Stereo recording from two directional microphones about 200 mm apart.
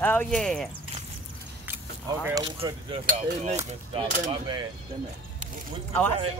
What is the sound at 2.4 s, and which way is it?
Speech, 25° right (ahead or behind).